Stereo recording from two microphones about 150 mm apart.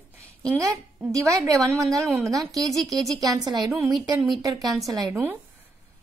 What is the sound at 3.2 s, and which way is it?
Speech, 25° right (ahead or behind).